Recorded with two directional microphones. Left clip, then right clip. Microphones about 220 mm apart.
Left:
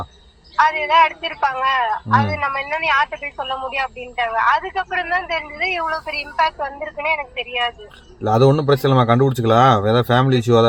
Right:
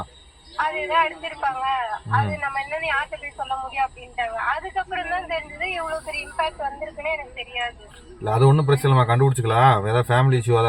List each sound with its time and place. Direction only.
0.5 s a man's voice: 45° left (ahead or behind)